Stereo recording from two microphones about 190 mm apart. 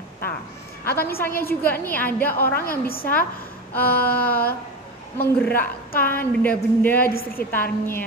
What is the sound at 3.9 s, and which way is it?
A woman's voice, 10° left (ahead or behind).